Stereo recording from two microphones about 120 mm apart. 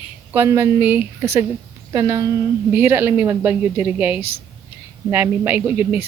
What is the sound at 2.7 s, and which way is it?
A man's voice, 20° right (ahead or behind).